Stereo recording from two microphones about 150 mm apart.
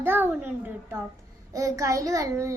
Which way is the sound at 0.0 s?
15° right (ahead or behind).